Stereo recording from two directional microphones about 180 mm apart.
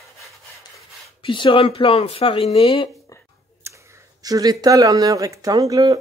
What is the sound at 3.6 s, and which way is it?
Speech, 15° right (ahead or behind).